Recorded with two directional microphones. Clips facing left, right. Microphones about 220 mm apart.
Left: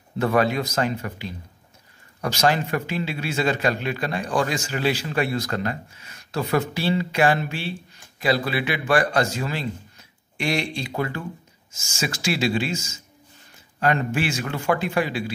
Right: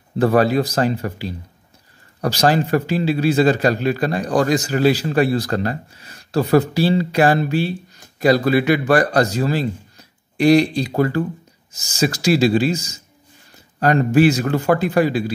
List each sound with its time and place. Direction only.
0.2 s speech: 35° right (ahead or behind)